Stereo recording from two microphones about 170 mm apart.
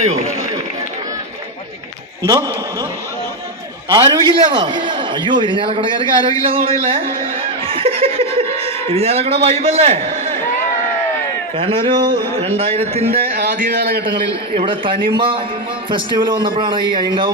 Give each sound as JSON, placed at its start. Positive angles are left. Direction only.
{"t": 3.9, "sound": "a man's voice", "side_deg": -25}
{"t": 11.5, "sound": "a man's voice", "side_deg": -30}
{"t": 13.1, "sound": "a man's voice", "side_deg": -60}
{"t": 14.0, "sound": "a man's voice", "side_deg": -30}